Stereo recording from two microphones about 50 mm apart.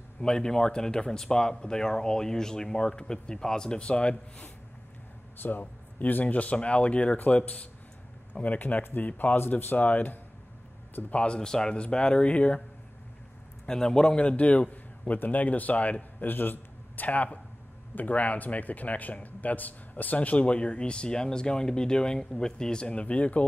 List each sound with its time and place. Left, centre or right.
0.2 s speech: centre
5.4 s a man's voice: left
11.1 s a man's voice: centre
13.7 s a man's voice: centre